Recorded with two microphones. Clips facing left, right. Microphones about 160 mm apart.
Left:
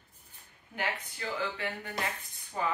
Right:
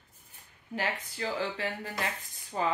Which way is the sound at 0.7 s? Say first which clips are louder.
Right 2 dB; 35° right (ahead or behind).